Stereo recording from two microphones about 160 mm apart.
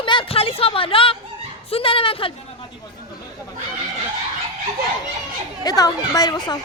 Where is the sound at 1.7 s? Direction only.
35° left (ahead or behind).